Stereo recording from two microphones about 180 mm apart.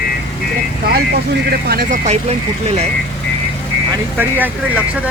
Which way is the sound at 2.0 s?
35° right (ahead or behind).